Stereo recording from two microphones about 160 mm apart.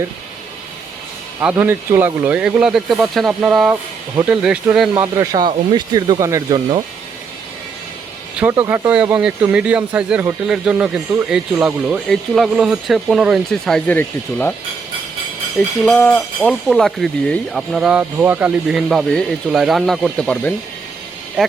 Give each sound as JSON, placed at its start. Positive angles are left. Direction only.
{"t": 1.4, "sound": "speech", "side_deg": -15}
{"t": 4.9, "sound": "speech", "side_deg": -20}
{"t": 8.4, "sound": "speech", "side_deg": -15}
{"t": 15.5, "sound": "speech", "side_deg": 5}